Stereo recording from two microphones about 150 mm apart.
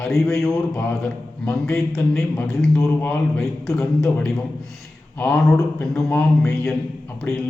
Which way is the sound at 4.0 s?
5° left (ahead or behind).